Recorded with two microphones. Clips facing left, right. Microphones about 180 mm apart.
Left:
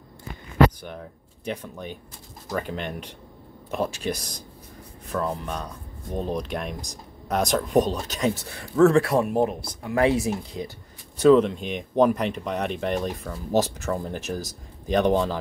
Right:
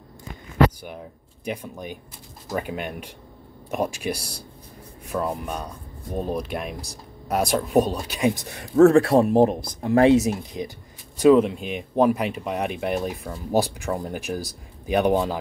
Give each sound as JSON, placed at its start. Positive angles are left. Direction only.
{"t": 1.4, "sound": "speech", "side_deg": -10}
{"t": 8.8, "sound": "speech", "side_deg": -30}